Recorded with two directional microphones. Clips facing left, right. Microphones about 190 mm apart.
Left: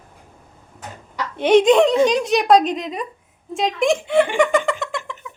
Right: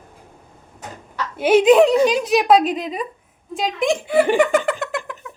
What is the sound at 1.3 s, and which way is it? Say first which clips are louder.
A woman's voice: right 1 dB; 5° right (ahead or behind).